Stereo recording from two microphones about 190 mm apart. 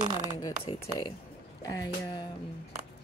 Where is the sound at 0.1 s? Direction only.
20° right (ahead or behind).